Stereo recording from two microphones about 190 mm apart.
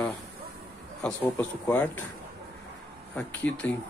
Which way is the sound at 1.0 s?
10° left (ahead or behind).